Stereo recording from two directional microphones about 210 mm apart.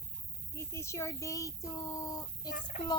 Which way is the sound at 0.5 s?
10° left (ahead or behind).